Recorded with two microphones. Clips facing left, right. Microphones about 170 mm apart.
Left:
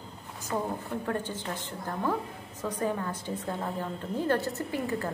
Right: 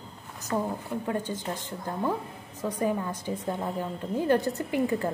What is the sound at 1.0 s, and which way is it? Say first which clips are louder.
A woman's voice: right 3 dB; 10° right (ahead or behind).